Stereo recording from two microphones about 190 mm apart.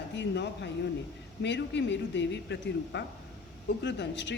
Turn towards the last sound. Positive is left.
turn(degrees=65)  # may be behind; listen again after turning